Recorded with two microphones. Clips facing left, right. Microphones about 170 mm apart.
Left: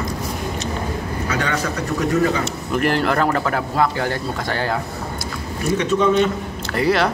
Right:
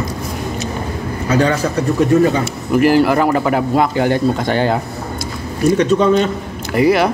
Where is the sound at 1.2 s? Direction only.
30° right (ahead or behind).